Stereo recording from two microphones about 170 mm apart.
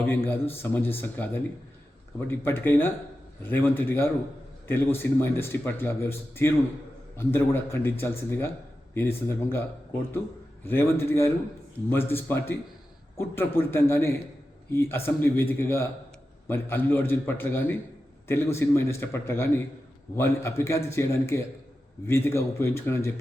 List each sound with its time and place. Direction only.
0.3 s speech: 10° left (ahead or behind)
10.7 s speech: 15° left (ahead or behind)